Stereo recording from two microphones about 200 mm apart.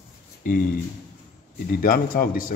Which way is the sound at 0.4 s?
45° left (ahead or behind).